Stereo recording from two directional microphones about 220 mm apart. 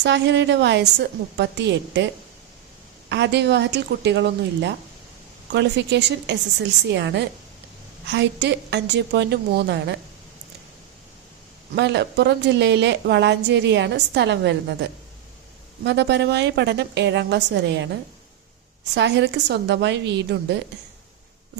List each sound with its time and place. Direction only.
0.0 s a woman's voice: 50° right (ahead or behind)
3.1 s a woman's voice: 50° right (ahead or behind)
11.7 s a woman's voice: 50° right (ahead or behind)
18.9 s a woman's voice: 50° right (ahead or behind)